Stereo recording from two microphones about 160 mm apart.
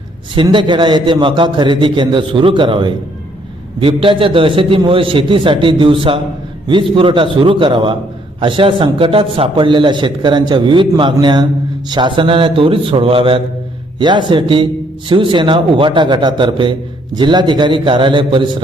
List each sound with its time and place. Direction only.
0.3 s a man's voice: 30° right (ahead or behind)